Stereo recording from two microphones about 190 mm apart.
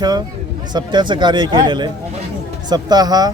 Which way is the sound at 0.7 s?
20° right (ahead or behind).